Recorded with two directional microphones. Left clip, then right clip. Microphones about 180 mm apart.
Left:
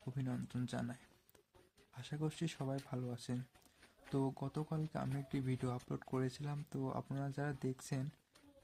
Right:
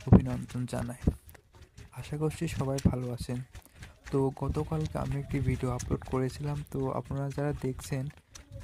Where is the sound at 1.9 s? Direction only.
35° right (ahead or behind).